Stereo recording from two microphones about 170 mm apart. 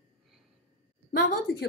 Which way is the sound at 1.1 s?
80° left.